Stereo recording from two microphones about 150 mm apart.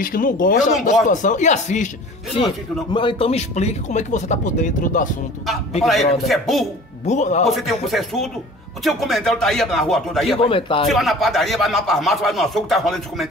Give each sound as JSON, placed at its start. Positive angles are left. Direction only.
{"t": 0.0, "sound": "speech", "side_deg": 70}
{"t": 1.1, "sound": "speech", "side_deg": 55}
{"t": 2.3, "sound": "speech", "side_deg": 30}
{"t": 5.9, "sound": "speech", "side_deg": 0}
{"t": 7.1, "sound": "speech", "side_deg": 50}
{"t": 7.4, "sound": "speech", "side_deg": 0}
{"t": 10.5, "sound": "a man's voice", "side_deg": 35}
{"t": 10.9, "sound": "speech", "side_deg": 0}